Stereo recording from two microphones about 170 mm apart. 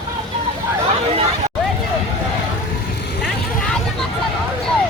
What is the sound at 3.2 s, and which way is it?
Vehicle, 5° left (ahead or behind).